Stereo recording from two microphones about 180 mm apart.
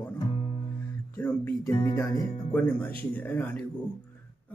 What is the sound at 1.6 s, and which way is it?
Music, 20° left (ahead or behind).